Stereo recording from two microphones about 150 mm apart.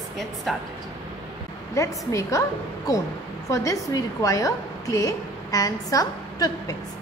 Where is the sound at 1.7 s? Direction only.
20° left (ahead or behind).